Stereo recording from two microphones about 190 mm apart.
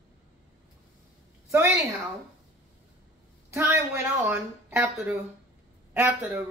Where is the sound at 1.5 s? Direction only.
15° right (ahead or behind).